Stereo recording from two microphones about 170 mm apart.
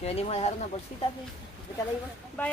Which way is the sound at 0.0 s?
35° left (ahead or behind).